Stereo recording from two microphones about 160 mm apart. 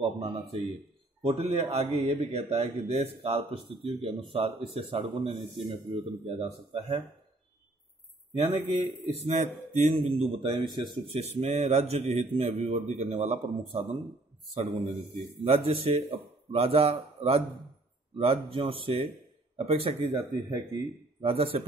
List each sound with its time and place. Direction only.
0.0 s a man's voice: 35° right (ahead or behind)
8.4 s a man's voice: 40° right (ahead or behind)
15.4 s a man's voice: 40° right (ahead or behind)
20.1 s speech: 25° right (ahead or behind)
21.2 s a man's voice: 35° right (ahead or behind)